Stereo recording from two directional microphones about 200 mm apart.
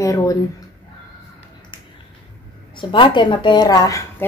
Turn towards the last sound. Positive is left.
turn(degrees=15)  # may be behind; listen again after turning